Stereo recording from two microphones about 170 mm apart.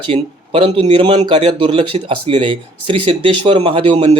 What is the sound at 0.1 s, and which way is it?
Speech, 30° right (ahead or behind).